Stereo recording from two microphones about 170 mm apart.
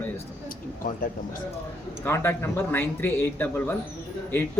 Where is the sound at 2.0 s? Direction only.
10° left (ahead or behind).